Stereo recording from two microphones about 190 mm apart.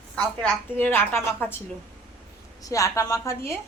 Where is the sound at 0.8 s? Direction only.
10° left (ahead or behind).